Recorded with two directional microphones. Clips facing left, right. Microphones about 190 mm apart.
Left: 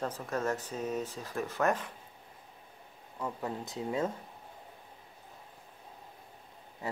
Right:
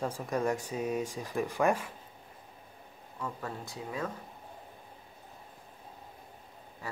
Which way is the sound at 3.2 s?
20° left (ahead or behind).